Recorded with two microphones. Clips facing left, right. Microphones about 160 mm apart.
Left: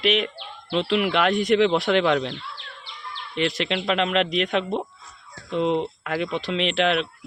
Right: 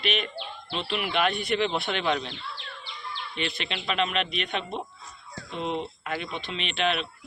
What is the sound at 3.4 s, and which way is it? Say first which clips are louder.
Speech: left 9 dB; 90° left.